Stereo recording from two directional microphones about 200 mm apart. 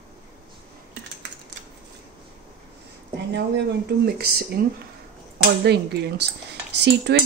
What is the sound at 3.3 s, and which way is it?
Speech, 55° right (ahead or behind).